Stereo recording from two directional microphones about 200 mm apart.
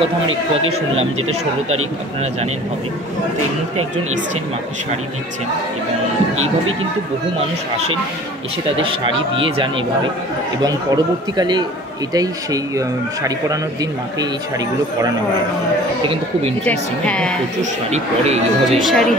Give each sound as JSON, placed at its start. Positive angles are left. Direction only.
{"t": 0.7, "sound": "speech", "side_deg": -30}
{"t": 8.8, "sound": "speech", "side_deg": -25}
{"t": 11.3, "sound": "speech", "side_deg": -20}
{"t": 12.7, "sound": "speech", "side_deg": -15}
{"t": 16.6, "sound": "a woman's voice", "side_deg": 5}
{"t": 17.6, "sound": "speech", "side_deg": -35}
{"t": 18.7, "sound": "a woman's voice", "side_deg": 0}